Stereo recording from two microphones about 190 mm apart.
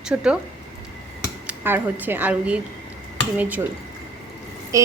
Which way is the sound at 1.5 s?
10° right (ahead or behind).